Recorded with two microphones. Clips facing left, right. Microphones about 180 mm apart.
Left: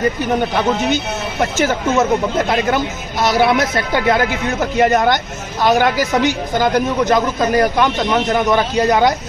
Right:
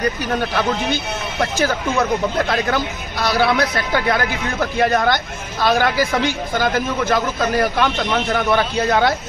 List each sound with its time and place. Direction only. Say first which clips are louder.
0.2 s speech: left 4 dB; 15° left (ahead or behind)